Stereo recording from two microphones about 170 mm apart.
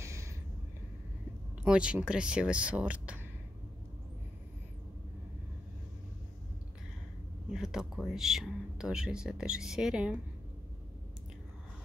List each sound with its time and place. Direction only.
0.0 s a sound: 15° right (ahead or behind)
1.6 s speech: 5° right (ahead or behind)
7.5 s speech: 5° right (ahead or behind)